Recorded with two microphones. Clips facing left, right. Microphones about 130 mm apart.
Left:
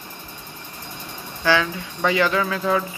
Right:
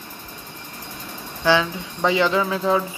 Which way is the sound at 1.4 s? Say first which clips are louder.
Right 1 dB; 20° right (ahead or behind).